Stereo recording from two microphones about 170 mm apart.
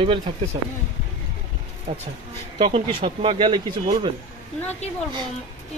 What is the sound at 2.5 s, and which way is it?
Speech, 30° right (ahead or behind).